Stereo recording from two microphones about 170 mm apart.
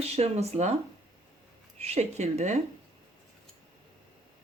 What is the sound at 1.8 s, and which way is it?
Speech, 40° right (ahead or behind).